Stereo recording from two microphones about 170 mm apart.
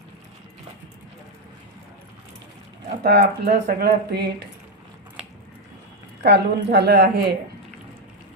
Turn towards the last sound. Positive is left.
turn(degrees=-70)  # may be behind; listen again after turning